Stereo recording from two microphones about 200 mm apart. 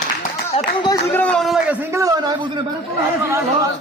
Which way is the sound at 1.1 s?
5° left (ahead or behind).